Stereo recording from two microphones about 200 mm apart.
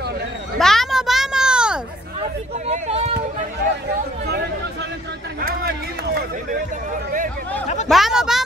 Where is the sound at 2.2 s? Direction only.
35° right (ahead or behind).